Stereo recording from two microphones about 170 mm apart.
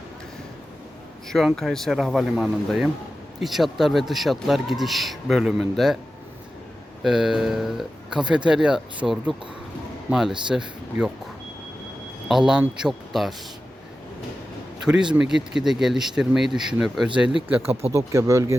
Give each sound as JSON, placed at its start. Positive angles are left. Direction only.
{"t": 1.3, "sound": "a man's voice", "side_deg": 0}
{"t": 7.0, "sound": "a man's voice", "side_deg": -5}
{"t": 12.3, "sound": "a man's voice", "side_deg": -5}
{"t": 14.8, "sound": "a man's voice", "side_deg": -5}
{"t": 17.9, "sound": "speech", "side_deg": -20}